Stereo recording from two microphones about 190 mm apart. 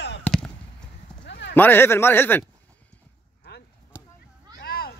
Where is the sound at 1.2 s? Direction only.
65° left (ahead or behind).